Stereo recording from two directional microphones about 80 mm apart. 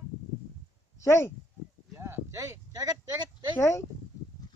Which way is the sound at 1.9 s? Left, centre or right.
Right.